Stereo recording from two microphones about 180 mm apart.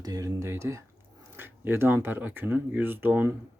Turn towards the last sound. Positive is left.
turn(degrees=-10)  # may be behind; listen again after turning